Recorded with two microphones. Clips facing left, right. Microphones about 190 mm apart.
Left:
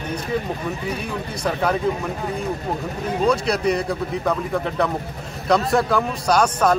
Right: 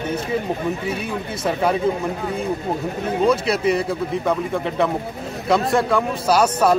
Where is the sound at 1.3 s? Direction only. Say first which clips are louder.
Right 2 dB; 5° right (ahead or behind).